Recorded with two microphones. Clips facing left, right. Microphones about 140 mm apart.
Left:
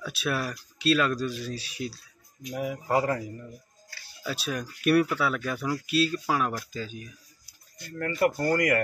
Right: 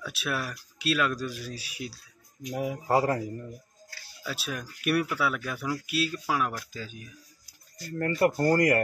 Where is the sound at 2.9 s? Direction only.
30° right (ahead or behind).